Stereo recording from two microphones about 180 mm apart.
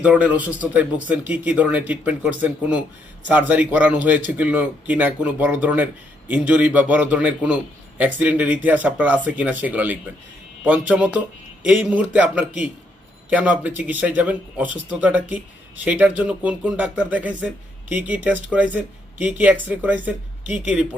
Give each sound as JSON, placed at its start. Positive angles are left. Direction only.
{"t": 0.0, "sound": "speech", "side_deg": -5}